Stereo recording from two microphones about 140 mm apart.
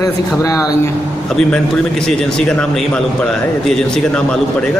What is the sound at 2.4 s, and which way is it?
Speech, 5° left (ahead or behind).